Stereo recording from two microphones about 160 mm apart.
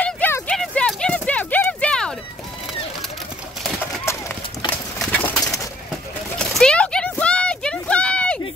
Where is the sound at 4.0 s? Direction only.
15° left (ahead or behind).